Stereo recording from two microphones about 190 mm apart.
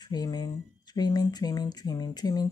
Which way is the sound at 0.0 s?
20° left (ahead or behind).